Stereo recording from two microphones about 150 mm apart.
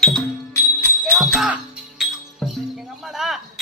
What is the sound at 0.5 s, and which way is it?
Music, 15° left (ahead or behind).